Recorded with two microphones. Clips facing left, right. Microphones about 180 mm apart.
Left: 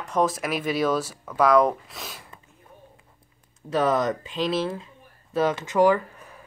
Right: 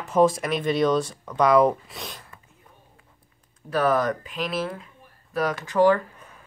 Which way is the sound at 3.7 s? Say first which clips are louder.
Even; 20° left (ahead or behind).